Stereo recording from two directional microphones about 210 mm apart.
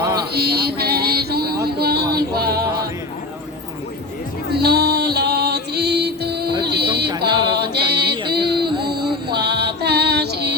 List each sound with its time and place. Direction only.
0.3 s a sound: 50° right (ahead or behind)
2.1 s music: 50° right (ahead or behind)
4.5 s music: 50° right (ahead or behind)
6.7 s a sound: 50° right (ahead or behind)
7.5 s music: 50° right (ahead or behind)
8.3 s female singing: 50° right (ahead or behind)